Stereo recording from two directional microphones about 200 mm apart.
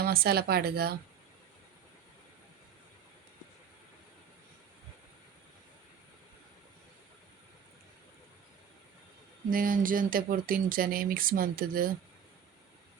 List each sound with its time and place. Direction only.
0.0 s speech: 50° right (ahead or behind)
9.5 s speech: 45° right (ahead or behind)